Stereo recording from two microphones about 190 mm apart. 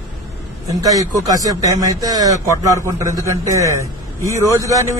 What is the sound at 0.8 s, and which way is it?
A man's voice, 20° right (ahead or behind).